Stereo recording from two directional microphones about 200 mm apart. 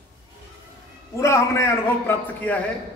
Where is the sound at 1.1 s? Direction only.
15° left (ahead or behind).